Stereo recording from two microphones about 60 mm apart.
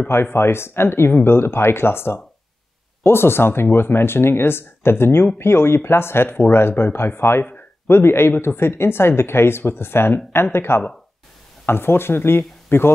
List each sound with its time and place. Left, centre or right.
0.1 s speech: left